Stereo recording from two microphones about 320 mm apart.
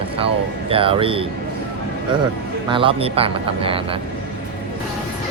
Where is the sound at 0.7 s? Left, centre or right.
Centre.